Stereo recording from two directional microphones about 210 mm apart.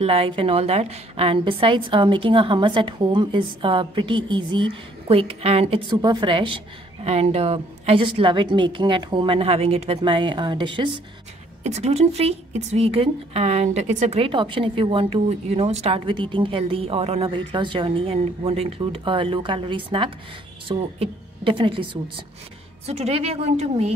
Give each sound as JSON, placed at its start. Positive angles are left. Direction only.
{"t": 0.0, "sound": "a woman's voice", "side_deg": -25}
{"t": 22.8, "sound": "a woman's voice", "side_deg": -30}